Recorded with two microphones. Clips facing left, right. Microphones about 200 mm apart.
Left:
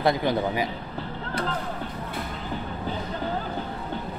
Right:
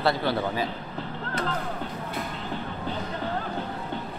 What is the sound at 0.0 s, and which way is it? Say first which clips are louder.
Speech: left 2 dB; 15° left (ahead or behind).